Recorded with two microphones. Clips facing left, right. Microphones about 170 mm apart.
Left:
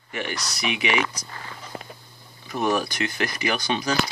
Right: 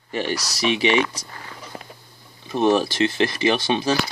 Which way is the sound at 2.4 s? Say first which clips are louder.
Right 5 dB; 25° right (ahead or behind).